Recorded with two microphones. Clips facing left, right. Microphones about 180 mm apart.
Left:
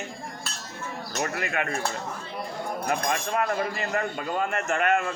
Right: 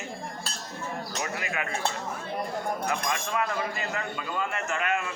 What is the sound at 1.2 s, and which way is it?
Speech, 55° left (ahead or behind).